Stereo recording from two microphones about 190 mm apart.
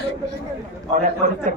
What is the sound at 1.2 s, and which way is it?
Speech, 40° right (ahead or behind).